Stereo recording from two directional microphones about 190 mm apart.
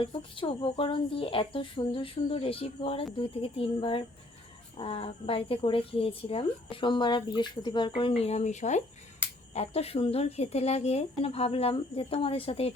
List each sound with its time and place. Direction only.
0.0 s speech: 25° left (ahead or behind)